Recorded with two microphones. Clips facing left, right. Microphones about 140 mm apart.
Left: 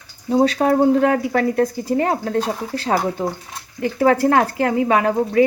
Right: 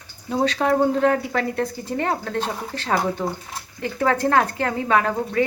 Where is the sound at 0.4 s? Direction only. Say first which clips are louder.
Left 3 dB; 35° left (ahead or behind).